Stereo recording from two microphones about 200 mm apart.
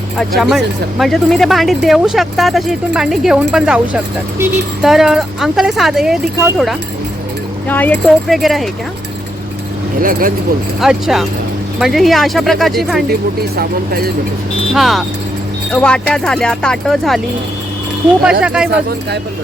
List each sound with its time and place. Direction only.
0.2 s speech: centre (ahead or behind)
7.7 s speech: 10° left (ahead or behind)
10.0 s speech: 45° right (ahead or behind)
10.8 s speech: centre (ahead or behind)
13.6 s speech: 50° right (ahead or behind)
14.7 s speech: centre (ahead or behind)
18.4 s speech: 5° right (ahead or behind)